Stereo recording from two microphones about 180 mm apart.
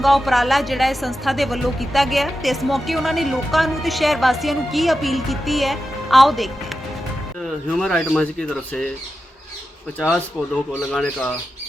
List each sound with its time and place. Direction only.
0.0 s a woman's voice: centre (ahead or behind)
7.8 s a woman's voice: centre (ahead or behind)
10.0 s speech: 10° left (ahead or behind)